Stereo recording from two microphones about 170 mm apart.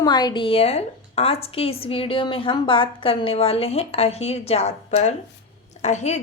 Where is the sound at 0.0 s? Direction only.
25° left (ahead or behind).